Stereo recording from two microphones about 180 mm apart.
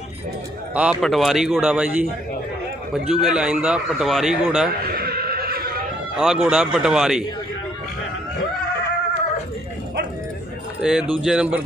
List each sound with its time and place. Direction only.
0.7 s a man's voice: centre (ahead or behind)
4.8 s music: 55° right (ahead or behind)
6.1 s a man's voice: centre (ahead or behind)
10.8 s a man's voice: 5° right (ahead or behind)